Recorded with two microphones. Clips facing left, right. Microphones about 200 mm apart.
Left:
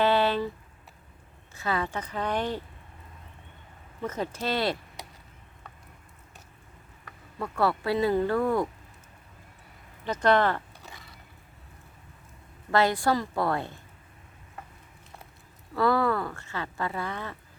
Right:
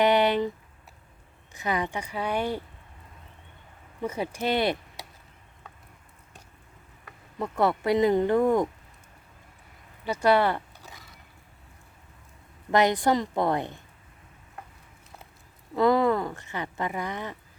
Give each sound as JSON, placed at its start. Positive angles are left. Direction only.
{"t": 0.0, "sound": "a sound", "side_deg": -15}
{"t": 1.5, "sound": "speech", "side_deg": -15}
{"t": 4.0, "sound": "speech", "side_deg": -10}
{"t": 7.3, "sound": "speech", "side_deg": -20}
{"t": 10.0, "sound": "speech", "side_deg": -10}
{"t": 12.7, "sound": "speech", "side_deg": -20}
{"t": 15.7, "sound": "speech", "side_deg": -20}